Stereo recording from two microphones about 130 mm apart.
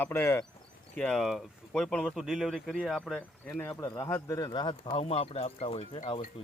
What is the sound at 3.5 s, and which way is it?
Speech, 15° left (ahead or behind).